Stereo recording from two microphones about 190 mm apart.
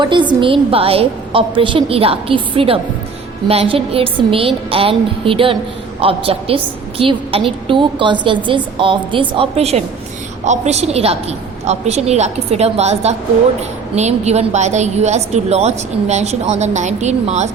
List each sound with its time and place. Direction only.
0.0 s a woman's voice: 25° right (ahead or behind)